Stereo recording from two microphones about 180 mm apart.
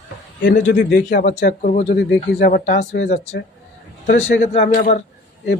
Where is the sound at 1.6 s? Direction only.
45° left (ahead or behind).